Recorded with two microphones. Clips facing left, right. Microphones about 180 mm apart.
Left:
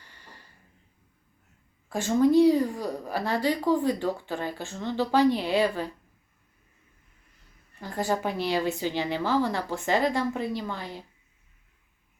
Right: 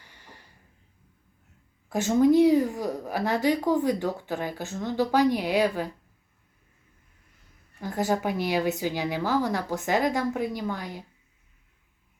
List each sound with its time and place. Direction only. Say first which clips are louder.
0.0 s a sound: right 1 dB; 15° right (ahead or behind)
1.9 s a woman's voice: right 1 dB; 15° right (ahead or behind)
7.8 s a woman's voice: right 2 dB; 10° right (ahead or behind)